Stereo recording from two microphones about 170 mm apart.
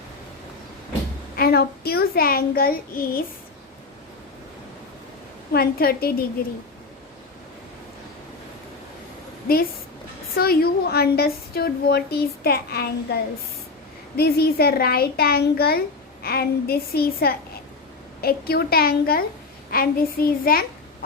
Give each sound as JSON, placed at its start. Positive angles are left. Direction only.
{"t": 1.4, "sound": "a woman's voice", "side_deg": 65}
{"t": 5.5, "sound": "a woman's voice", "side_deg": 60}
{"t": 10.3, "sound": "a woman's voice", "side_deg": 60}
{"t": 14.2, "sound": "a woman's voice", "side_deg": 65}